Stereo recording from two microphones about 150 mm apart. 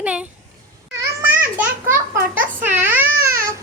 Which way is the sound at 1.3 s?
10° right (ahead or behind).